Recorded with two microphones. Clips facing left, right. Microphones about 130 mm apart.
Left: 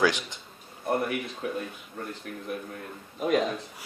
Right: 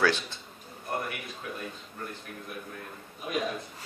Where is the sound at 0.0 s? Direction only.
15° left (ahead or behind).